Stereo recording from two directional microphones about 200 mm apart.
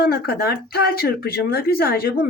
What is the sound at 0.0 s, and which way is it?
Speech, 50° left (ahead or behind).